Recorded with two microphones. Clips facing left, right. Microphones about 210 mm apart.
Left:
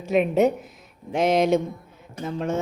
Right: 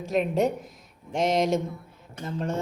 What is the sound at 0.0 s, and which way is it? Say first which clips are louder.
A woman's voice: left 5 dB; 5° left (ahead or behind).